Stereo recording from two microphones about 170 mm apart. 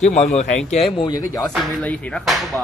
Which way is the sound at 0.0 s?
45° left (ahead or behind).